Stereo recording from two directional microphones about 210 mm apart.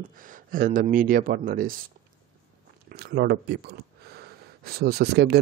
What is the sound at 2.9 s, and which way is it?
Speech, 45° right (ahead or behind).